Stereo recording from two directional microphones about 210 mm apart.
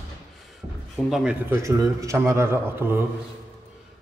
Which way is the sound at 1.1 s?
5° right (ahead or behind).